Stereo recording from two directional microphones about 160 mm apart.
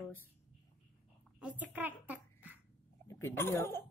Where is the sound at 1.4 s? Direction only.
10° right (ahead or behind).